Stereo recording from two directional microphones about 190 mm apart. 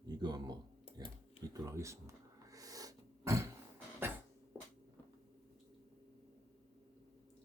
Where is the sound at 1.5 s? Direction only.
15° right (ahead or behind).